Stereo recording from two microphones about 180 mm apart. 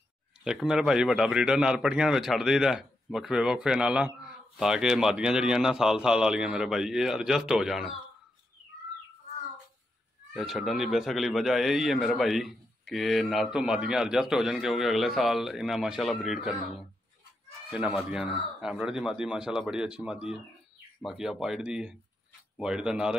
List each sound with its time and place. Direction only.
0.4 s a man's voice: 5° right (ahead or behind)
10.3 s a man's voice: centre (ahead or behind)
17.6 s a man's voice: 5° right (ahead or behind)